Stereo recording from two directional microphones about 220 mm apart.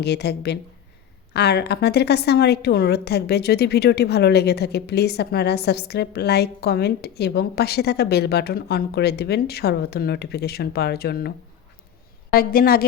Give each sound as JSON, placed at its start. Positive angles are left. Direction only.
{"t": 0.0, "sound": "a woman's voice", "side_deg": 50}
{"t": 12.3, "sound": "a woman's voice", "side_deg": 40}